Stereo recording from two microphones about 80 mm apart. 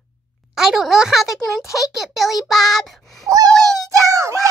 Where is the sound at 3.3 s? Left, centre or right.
Right.